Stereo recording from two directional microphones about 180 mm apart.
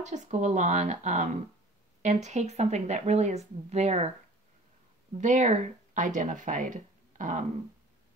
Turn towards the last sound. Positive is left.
turn(degrees=-45)  # may be behind; listen again after turning